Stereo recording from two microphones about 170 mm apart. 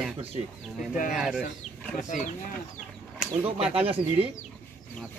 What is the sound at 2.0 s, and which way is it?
Speech, 50° left (ahead or behind).